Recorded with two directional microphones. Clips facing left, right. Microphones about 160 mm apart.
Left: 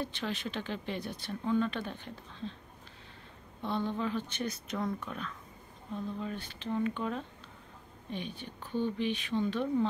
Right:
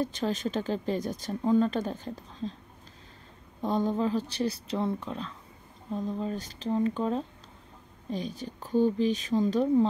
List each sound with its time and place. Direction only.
0.0 s speech: 40° right (ahead or behind)
3.6 s speech: 40° right (ahead or behind)